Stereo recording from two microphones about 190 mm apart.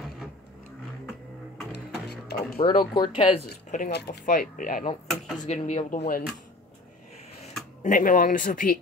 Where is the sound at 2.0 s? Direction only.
55° left (ahead or behind).